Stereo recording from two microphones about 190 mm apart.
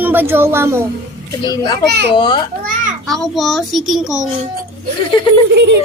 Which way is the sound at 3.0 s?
Centre (ahead or behind).